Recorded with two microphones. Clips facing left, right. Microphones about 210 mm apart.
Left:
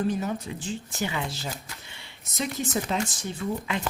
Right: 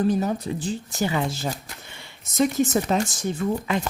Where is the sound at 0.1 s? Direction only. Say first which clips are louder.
Right 5 dB; 40° right (ahead or behind).